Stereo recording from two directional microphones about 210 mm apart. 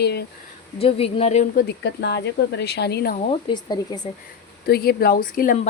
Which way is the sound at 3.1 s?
25° left (ahead or behind).